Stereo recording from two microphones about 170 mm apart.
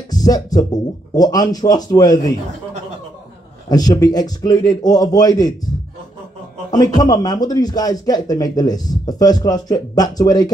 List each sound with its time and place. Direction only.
0.1 s a man's voice: 20° left (ahead or behind)
3.6 s a man's voice: 20° left (ahead or behind)
6.7 s a man's voice: 20° left (ahead or behind)